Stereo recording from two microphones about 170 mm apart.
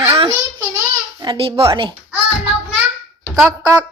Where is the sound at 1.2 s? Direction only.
30° right (ahead or behind).